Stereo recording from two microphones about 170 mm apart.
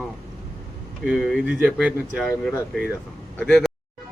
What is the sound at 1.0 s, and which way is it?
Speech, 5° right (ahead or behind).